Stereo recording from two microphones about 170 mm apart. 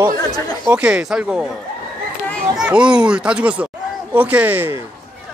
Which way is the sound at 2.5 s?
5° right (ahead or behind).